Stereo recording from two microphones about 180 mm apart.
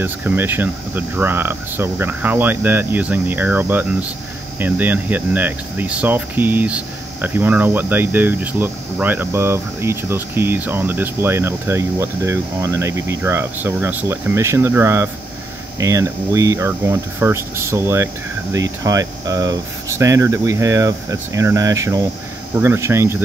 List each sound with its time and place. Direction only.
0.0 s speech: 10° right (ahead or behind)